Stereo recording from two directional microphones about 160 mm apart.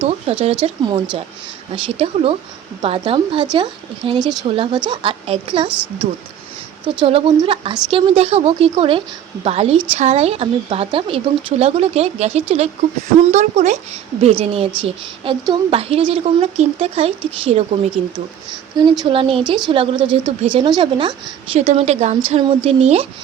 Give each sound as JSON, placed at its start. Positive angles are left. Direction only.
{"t": 0.0, "sound": "a sound", "side_deg": -40}
{"t": 0.6, "sound": "speech", "side_deg": -30}
{"t": 6.8, "sound": "speech", "side_deg": -35}